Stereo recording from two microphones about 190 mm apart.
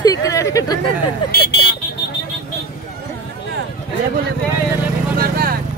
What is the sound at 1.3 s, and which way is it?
Speech, 55° left (ahead or behind).